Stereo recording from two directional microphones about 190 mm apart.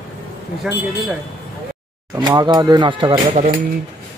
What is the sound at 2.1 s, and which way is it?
Speech, 20° right (ahead or behind).